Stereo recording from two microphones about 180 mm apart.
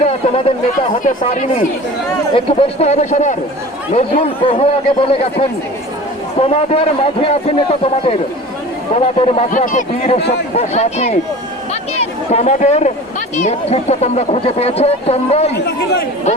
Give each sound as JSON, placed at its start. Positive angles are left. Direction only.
{"t": 0.0, "sound": "a sound", "side_deg": 30}
{"t": 2.3, "sound": "speech", "side_deg": 30}
{"t": 9.5, "sound": "speech", "side_deg": 45}
{"t": 10.2, "sound": "speech", "side_deg": 70}
{"t": 10.5, "sound": "speech", "side_deg": 35}
{"t": 15.5, "sound": "speech", "side_deg": 65}